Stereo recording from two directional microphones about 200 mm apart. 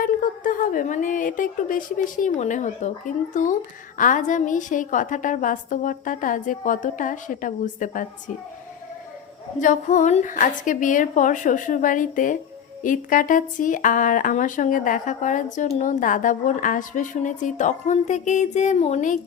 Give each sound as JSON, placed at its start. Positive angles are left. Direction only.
{"t": 0.0, "sound": "a woman's voice", "side_deg": 45}
{"t": 9.6, "sound": "speech", "side_deg": 40}